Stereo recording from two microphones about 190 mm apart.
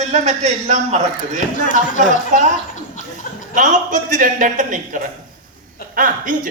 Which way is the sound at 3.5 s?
40° right (ahead or behind).